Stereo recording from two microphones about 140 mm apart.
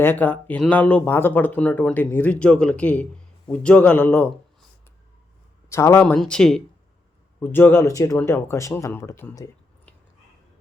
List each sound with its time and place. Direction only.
0.0 s speech: 15° left (ahead or behind)
5.6 s speech: 20° left (ahead or behind)
6.1 s speech: 5° left (ahead or behind); by 9.5 s 20° left (ahead or behind)